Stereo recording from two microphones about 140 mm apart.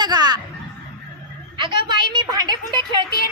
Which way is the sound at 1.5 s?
35° right (ahead or behind).